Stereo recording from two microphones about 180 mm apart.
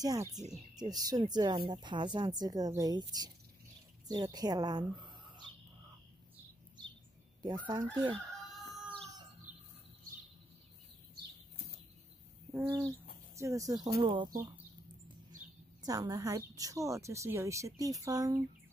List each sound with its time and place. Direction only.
0.0 s a woman's voice: 20° right (ahead or behind)
7.4 s a woman's voice: 25° right (ahead or behind)
8.5 s chicken: centre (ahead or behind)
12.6 s a woman's voice: 20° right (ahead or behind)
15.8 s speech: 20° right (ahead or behind)